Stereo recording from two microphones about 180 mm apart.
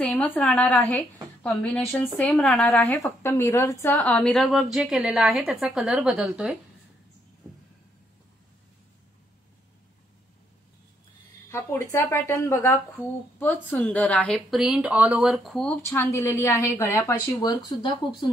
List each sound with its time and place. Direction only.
0.0 s a woman's voice: 10° left (ahead or behind)
11.5 s speech: 15° left (ahead or behind)